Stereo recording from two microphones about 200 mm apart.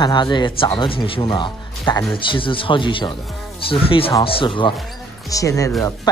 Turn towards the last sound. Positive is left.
turn(degrees=15)  # may be behind; listen again after turning